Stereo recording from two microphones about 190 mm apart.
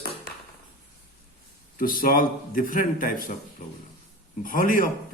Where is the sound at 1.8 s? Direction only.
50° left (ahead or behind).